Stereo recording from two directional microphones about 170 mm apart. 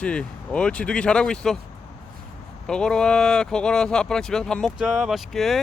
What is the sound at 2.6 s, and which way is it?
Speech, 5° left (ahead or behind).